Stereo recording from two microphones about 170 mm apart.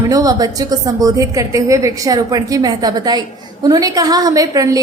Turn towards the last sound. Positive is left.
turn(degrees=-20)  # may be behind; listen again after turning